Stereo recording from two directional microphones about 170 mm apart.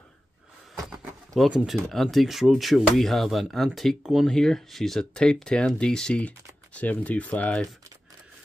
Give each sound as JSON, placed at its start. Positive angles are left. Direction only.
{"t": 0.8, "sound": "speech", "side_deg": 0}